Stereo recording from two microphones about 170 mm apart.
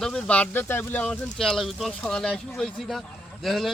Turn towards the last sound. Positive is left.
turn(degrees=0)  # may be behind; listen again after turning